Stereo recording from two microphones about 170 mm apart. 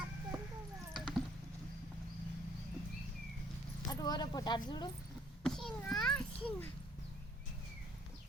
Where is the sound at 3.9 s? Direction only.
25° left (ahead or behind).